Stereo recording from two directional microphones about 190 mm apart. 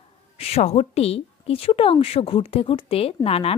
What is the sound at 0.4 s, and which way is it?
A woman's voice, 35° left (ahead or behind).